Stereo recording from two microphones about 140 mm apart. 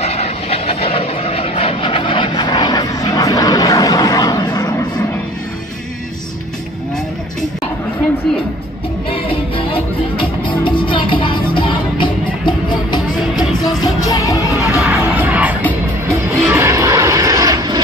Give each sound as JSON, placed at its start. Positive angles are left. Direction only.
{"t": 0.0, "sound": "vehicle", "side_deg": 50}
{"t": 9.7, "sound": "music", "side_deg": 40}
{"t": 14.5, "sound": "music", "side_deg": 0}
{"t": 16.1, "sound": "vehicle", "side_deg": -15}